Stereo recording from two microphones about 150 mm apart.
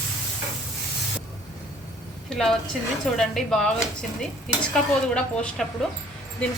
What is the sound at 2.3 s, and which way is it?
A woman's voice, centre (ahead or behind).